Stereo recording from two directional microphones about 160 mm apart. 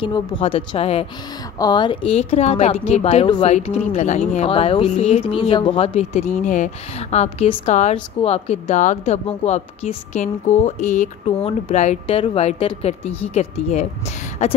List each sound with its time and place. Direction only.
0.0 s a woman's voice: 35° left (ahead or behind)
1.6 s a woman's voice: 25° left (ahead or behind); by 5.2 s 45° left (ahead or behind)
5.3 s speech: 35° left (ahead or behind)